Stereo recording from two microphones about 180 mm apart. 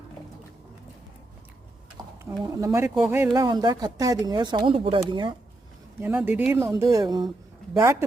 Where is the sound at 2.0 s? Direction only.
20° right (ahead or behind).